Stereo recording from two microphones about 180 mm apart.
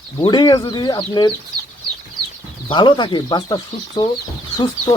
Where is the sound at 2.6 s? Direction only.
25° left (ahead or behind).